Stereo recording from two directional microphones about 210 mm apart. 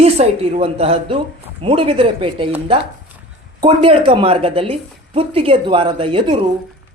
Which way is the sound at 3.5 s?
25° right (ahead or behind).